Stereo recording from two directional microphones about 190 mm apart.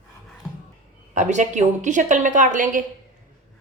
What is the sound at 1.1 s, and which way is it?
A woman's voice, 40° right (ahead or behind).